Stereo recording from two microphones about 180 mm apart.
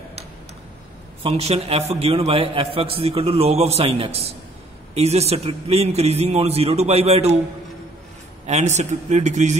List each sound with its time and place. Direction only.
1.2 s a man's voice: 35° right (ahead or behind)
8.5 s a man's voice: 40° right (ahead or behind)